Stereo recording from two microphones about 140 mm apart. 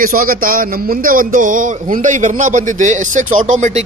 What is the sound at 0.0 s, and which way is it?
A man's voice, 85° right.